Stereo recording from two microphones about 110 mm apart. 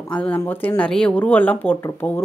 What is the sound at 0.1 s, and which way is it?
Speech, 15° left (ahead or behind).